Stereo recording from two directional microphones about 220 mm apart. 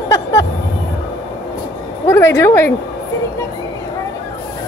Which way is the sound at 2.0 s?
10° left (ahead or behind).